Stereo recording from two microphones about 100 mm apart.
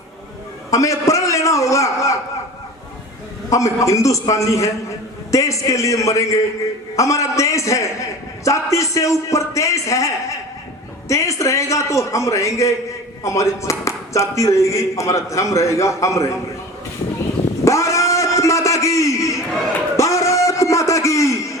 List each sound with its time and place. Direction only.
0.7 s a man's voice: 30° left (ahead or behind)
3.5 s speech: 30° left (ahead or behind)
17.7 s a sound: 30° left (ahead or behind)
20.0 s music: 30° left (ahead or behind)